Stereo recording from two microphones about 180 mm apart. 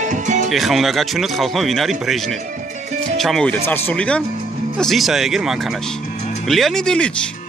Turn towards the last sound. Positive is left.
turn(degrees=5)  # may be behind; listen again after turning